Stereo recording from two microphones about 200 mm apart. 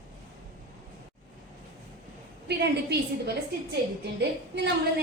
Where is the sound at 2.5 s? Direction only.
55° right (ahead or behind).